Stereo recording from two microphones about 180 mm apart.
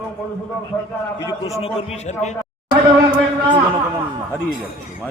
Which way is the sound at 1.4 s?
35° left (ahead or behind).